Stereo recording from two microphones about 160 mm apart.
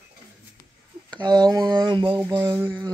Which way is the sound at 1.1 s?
25° right (ahead or behind).